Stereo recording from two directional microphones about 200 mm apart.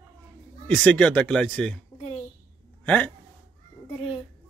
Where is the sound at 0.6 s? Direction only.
5° left (ahead or behind).